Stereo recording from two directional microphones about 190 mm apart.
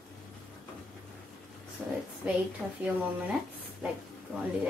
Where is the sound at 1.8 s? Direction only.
5° right (ahead or behind).